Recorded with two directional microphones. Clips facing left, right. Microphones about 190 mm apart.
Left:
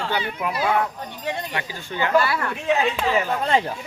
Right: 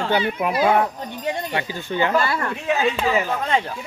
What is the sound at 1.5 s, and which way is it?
Speech, 25° right (ahead or behind).